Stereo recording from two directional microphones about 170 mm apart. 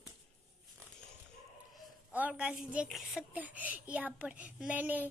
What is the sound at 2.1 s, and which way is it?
A woman's voice, 5° right (ahead or behind).